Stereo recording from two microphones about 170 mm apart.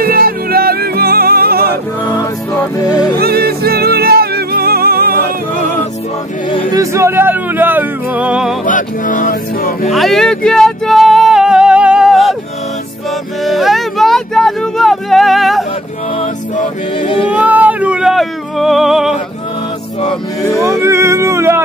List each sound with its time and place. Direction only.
0.0 s music: 60° right (ahead or behind)
2.5 s music: 10° left (ahead or behind)
3.2 s music: 65° right (ahead or behind)
6.7 s speech: 20° right (ahead or behind)
8.6 s speech: 50° left (ahead or behind)
9.8 s music: centre (ahead or behind)
13.4 s a sound: centre (ahead or behind)
17.0 s a sound: 30° left (ahead or behind)
17.3 s music: 10° right (ahead or behind)
20.5 s music: 20° right (ahead or behind)